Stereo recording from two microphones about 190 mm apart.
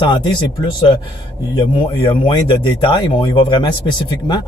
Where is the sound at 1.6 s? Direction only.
25° left (ahead or behind).